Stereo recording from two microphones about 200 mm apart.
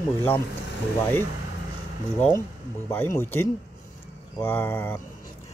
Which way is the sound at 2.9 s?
10° left (ahead or behind).